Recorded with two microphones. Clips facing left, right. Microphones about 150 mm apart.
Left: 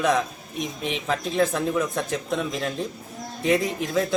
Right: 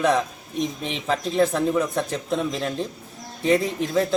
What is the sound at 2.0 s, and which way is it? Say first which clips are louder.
Speech: right 1 dB; 35° right (ahead or behind).